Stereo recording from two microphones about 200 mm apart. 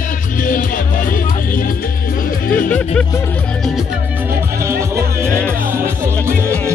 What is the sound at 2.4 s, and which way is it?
Music, 45° left (ahead or behind).